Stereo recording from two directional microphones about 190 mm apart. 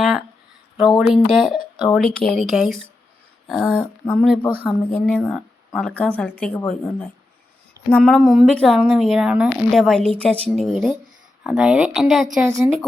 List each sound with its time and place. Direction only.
0.0 s a sound: centre (ahead or behind)
0.9 s speech: 5° right (ahead or behind)
12.5 s a woman's voice: 15° right (ahead or behind)